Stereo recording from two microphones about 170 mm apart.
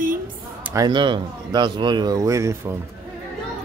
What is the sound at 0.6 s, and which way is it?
Speech, 15° right (ahead or behind).